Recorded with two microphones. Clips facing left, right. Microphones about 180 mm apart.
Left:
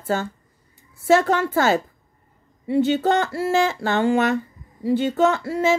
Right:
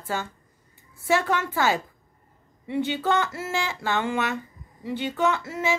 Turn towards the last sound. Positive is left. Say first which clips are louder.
# left 6 dB
turn(degrees=40)  # may be behind; listen again after turning